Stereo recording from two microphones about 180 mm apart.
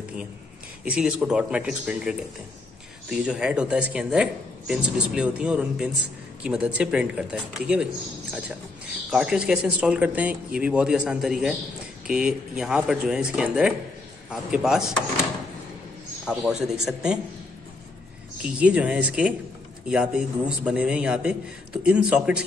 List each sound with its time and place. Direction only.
0.8 s speech: 5° right (ahead or behind)
16.3 s speech: 5° right (ahead or behind)
18.4 s speech: 5° right (ahead or behind)